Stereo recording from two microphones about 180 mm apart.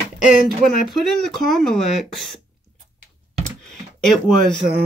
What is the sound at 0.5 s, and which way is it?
Speech, centre (ahead or behind).